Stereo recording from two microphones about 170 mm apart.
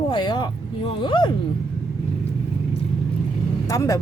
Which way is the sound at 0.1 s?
25° left (ahead or behind).